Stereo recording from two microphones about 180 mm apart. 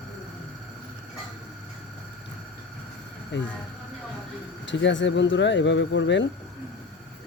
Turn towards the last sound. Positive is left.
turn(degrees=85)